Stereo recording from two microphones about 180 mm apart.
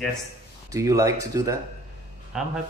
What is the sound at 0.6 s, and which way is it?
Speech, 20° right (ahead or behind).